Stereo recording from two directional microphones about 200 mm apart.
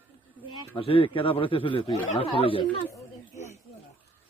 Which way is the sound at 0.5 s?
25° left (ahead or behind).